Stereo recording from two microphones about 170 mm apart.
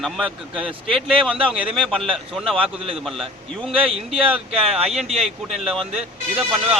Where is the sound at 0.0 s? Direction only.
Centre (ahead or behind).